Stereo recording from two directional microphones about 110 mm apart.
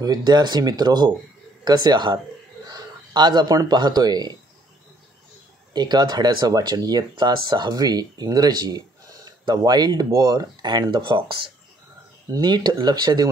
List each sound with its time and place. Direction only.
0.0 s speech: 40° right (ahead or behind)
5.7 s speech: 40° right (ahead or behind)